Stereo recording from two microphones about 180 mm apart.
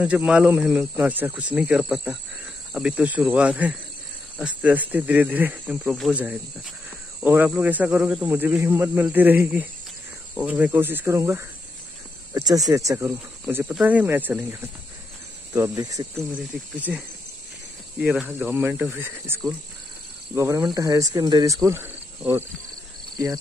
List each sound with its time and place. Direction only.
0.0 s speech: 5° right (ahead or behind)
5.9 s speech: centre (ahead or behind); by 16.1 s 20° right (ahead or behind)
16.7 s speech: 5° right (ahead or behind)
18.0 s speech: 5° right (ahead or behind)